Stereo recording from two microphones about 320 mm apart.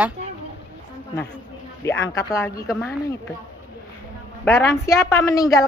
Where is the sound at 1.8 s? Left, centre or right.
Centre.